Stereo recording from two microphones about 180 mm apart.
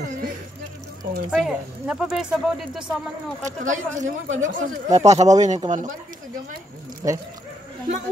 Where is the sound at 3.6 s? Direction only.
45° right (ahead or behind).